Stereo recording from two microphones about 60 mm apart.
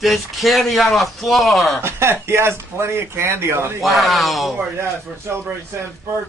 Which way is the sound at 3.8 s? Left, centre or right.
Centre.